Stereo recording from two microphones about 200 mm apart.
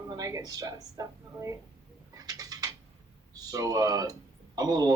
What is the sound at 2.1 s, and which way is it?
Bird, 20° right (ahead or behind).